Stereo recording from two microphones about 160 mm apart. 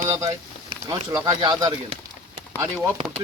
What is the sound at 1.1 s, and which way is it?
Speech, 20° right (ahead or behind).